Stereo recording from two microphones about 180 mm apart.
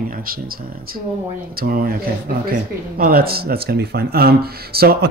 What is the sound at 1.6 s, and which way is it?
Speech, 55° right (ahead or behind).